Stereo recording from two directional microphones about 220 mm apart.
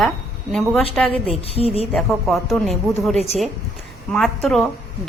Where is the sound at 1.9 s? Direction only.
Centre (ahead or behind).